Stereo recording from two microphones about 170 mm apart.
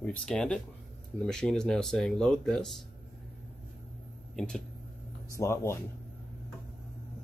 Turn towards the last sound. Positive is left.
turn(degrees=15)  # may be behind; listen again after turning